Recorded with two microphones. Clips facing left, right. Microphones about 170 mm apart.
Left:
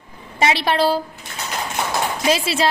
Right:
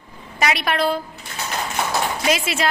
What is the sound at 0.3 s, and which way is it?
Speech, 30° left (ahead or behind).